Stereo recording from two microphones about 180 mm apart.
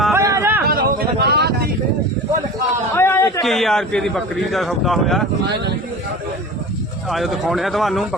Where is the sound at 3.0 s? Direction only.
15° left (ahead or behind).